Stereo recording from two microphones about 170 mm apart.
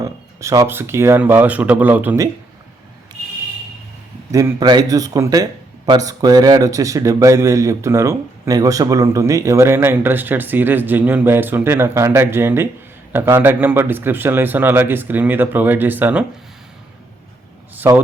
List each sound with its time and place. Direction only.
0.0 s a man's voice: 20° right (ahead or behind)
4.3 s a man's voice: 20° right (ahead or behind)
17.7 s a man's voice: 10° right (ahead or behind)